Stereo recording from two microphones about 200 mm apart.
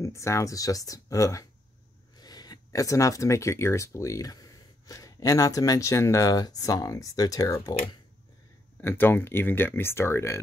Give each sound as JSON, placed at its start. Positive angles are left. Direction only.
{"t": 0.0, "sound": "speech", "side_deg": 15}
{"t": 8.8, "sound": "speech", "side_deg": 10}